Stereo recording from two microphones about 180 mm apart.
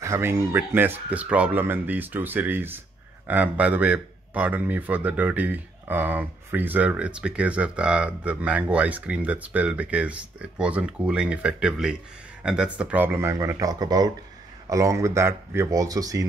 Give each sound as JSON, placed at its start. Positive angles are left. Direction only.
{"t": 0.0, "sound": "speech", "side_deg": -15}